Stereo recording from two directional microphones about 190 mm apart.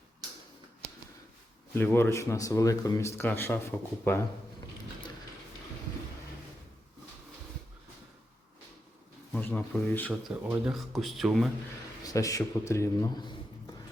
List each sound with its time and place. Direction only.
1.7 s speech: 10° left (ahead or behind)
9.3 s speech: 10° left (ahead or behind)
10.1 s speech: 5° right (ahead or behind)
12.0 s speech: 15° left (ahead or behind)